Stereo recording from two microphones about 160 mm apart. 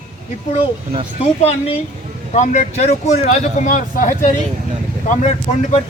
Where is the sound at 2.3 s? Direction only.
50° left (ahead or behind).